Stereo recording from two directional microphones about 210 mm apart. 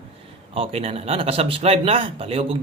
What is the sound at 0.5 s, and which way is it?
A man's voice, 25° right (ahead or behind).